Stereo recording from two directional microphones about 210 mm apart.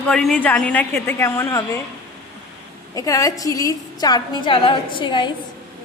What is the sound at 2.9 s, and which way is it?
A woman's voice, 15° left (ahead or behind).